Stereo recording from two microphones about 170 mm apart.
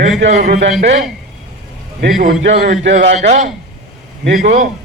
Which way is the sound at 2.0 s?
55° right (ahead or behind).